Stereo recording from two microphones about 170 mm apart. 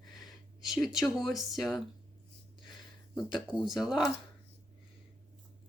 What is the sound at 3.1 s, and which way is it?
Speech, 5° right (ahead or behind).